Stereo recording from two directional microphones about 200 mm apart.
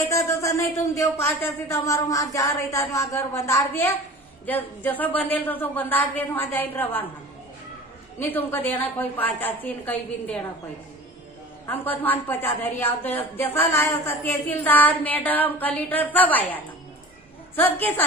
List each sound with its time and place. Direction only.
0.1 s a woman's voice: 15° left (ahead or behind)
8.2 s a woman's voice: 10° left (ahead or behind)
11.6 s a woman's voice: 10° left (ahead or behind)